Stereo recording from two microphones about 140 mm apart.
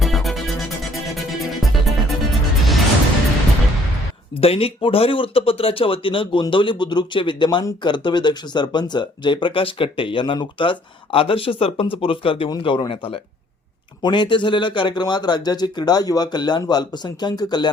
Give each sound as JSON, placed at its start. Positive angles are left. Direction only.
{"t": 0.0, "sound": "music", "side_deg": 0}
{"t": 4.4, "sound": "speech", "side_deg": 45}
{"t": 14.0, "sound": "speech", "side_deg": 35}